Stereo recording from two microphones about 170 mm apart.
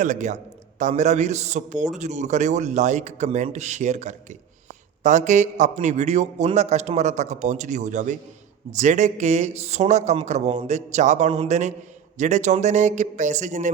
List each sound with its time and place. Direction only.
0.0 s a man's voice: 45° right (ahead or behind)